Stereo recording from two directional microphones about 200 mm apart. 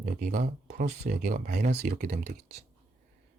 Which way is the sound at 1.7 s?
50° right (ahead or behind).